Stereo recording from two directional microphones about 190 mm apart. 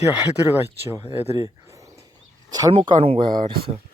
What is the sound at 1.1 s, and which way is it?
Speech, 35° left (ahead or behind).